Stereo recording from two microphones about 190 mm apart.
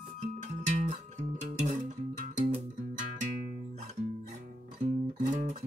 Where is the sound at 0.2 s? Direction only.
40° right (ahead or behind).